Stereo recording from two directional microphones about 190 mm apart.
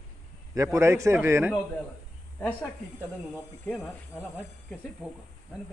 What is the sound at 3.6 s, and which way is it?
Speech, 5° left (ahead or behind).